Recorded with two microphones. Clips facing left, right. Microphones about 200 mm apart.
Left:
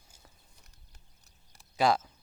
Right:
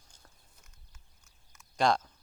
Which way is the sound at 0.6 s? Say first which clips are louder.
Left 1 dB; 35° left (ahead or behind).